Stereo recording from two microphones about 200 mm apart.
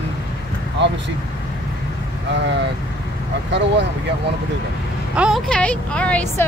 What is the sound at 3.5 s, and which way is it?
Speech, 60° right (ahead or behind).